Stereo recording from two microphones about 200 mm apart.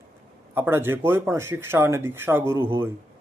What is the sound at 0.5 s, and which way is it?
Speech, 10° right (ahead or behind).